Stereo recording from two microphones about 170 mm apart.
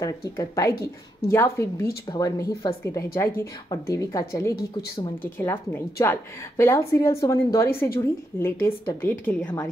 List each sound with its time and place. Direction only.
0.0 s a woman's voice: 20° left (ahead or behind)